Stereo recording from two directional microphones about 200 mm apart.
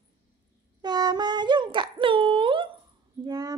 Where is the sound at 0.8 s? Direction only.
20° right (ahead or behind).